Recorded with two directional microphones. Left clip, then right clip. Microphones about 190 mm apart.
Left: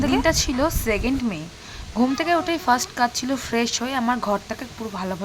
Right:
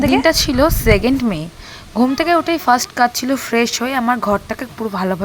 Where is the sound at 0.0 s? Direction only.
25° right (ahead or behind).